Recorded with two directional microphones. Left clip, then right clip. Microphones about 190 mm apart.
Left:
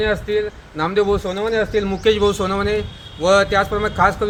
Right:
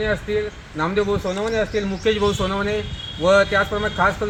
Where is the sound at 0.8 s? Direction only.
25° left (ahead or behind).